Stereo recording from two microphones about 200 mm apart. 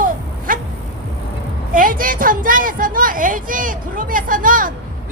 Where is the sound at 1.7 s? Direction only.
45° right (ahead or behind).